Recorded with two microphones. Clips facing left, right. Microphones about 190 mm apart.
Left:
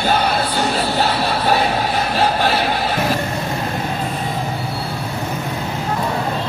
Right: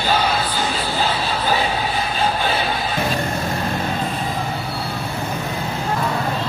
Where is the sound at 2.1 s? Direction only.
70° left (ahead or behind).